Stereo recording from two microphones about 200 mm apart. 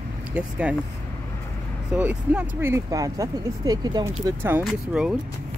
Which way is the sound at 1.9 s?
5° right (ahead or behind).